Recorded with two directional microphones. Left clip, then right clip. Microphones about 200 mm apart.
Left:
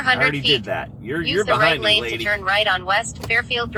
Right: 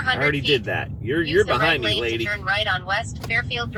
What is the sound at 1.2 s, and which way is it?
Speech, 35° left (ahead or behind).